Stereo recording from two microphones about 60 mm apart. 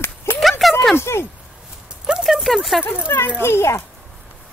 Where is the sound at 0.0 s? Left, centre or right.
Left.